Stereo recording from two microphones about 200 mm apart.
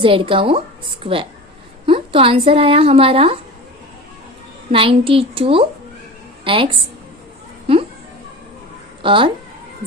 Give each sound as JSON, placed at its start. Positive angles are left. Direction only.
{"t": 0.0, "sound": "a woman's voice", "side_deg": -25}
{"t": 4.7, "sound": "a woman's voice", "side_deg": -25}
{"t": 9.0, "sound": "speech", "side_deg": -25}